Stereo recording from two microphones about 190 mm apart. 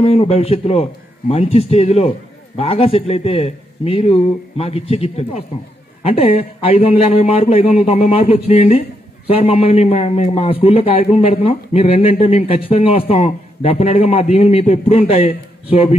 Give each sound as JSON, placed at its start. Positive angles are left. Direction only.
{"t": 0.0, "sound": "a man's voice", "side_deg": 30}